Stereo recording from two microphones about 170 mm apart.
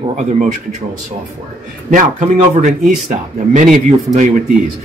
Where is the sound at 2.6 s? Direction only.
45° right (ahead or behind).